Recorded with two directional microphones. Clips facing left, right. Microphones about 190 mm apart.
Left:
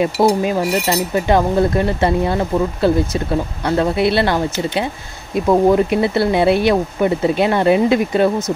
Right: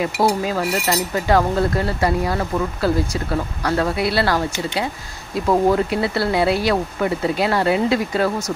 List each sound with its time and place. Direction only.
0.0 s speech: 20° left (ahead or behind)